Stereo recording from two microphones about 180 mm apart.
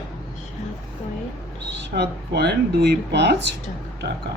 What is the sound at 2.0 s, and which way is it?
Speech, 65° right (ahead or behind).